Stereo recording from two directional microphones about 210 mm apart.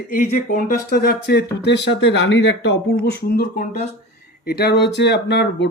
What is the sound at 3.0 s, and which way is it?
Speech, 45° left (ahead or behind).